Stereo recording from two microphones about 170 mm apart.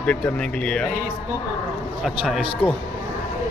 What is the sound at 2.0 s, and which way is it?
Speech, centre (ahead or behind).